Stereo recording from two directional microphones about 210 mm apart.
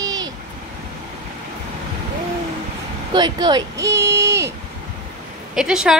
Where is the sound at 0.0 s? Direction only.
20° right (ahead or behind).